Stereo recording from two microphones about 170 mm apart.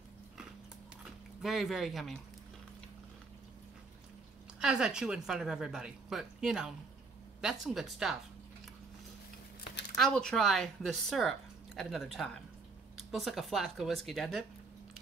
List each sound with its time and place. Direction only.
1.0 s speech: centre (ahead or behind)
4.6 s speech: 5° right (ahead or behind)
9.9 s speech: 5° left (ahead or behind)